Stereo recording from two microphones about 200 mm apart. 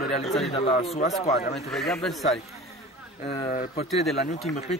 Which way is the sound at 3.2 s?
25° left (ahead or behind).